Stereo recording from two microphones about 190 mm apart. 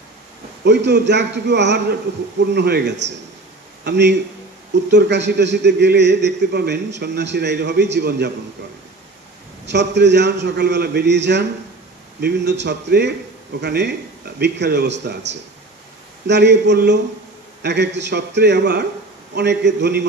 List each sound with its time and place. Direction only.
0.7 s a man's voice: 65° right (ahead or behind)
9.7 s a man's voice: 65° right (ahead or behind)